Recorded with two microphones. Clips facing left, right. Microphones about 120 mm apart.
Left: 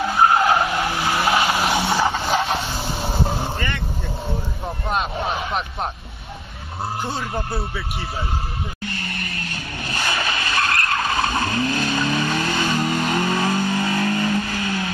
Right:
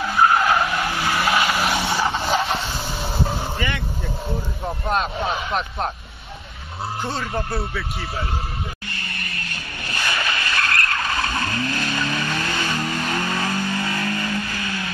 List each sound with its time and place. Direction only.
0.0 s vehicle: 35° left (ahead or behind)
1.0 s skidding: 25° left (ahead or behind)
1.7 s vehicle: 25° left (ahead or behind)
2.0 s vehicle: centre (ahead or behind)
3.0 s vehicle: 25° left (ahead or behind)
3.5 s vehicle: 5° right (ahead or behind)
4.8 s speech: 5° left (ahead or behind)
7.0 s speech: centre (ahead or behind)
9.8 s vehicle: 20° left (ahead or behind)